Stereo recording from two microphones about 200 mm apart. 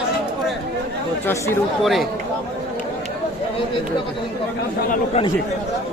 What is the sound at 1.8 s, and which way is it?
Speech, centre (ahead or behind).